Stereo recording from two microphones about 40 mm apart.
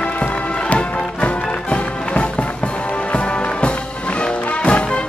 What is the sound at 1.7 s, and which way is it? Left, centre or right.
Music, left.